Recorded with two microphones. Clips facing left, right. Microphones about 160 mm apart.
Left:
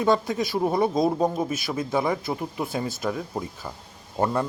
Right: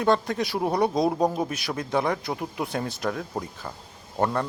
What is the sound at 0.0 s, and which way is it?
Speech, 5° left (ahead or behind).